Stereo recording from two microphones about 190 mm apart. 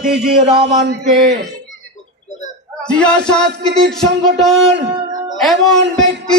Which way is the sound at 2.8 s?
5° left (ahead or behind).